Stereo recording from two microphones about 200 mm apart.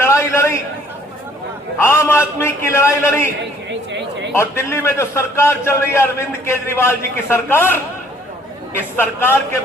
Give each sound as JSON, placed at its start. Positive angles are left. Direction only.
{"t": 0.0, "sound": "a sound", "side_deg": 15}
{"t": 1.8, "sound": "a man's voice", "side_deg": 10}
{"t": 3.7, "sound": "a woman's voice", "side_deg": -60}
{"t": 4.4, "sound": "a man's voice", "side_deg": 15}